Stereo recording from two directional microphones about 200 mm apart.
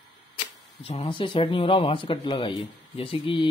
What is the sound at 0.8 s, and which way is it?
Speech, 30° left (ahead or behind).